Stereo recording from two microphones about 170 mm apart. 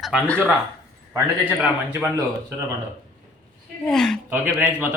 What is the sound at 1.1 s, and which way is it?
Speech, 15° right (ahead or behind).